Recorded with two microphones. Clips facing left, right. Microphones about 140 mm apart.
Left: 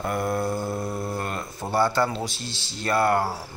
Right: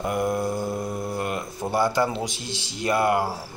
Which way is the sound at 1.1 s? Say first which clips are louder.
Right 2 dB; 10° right (ahead or behind).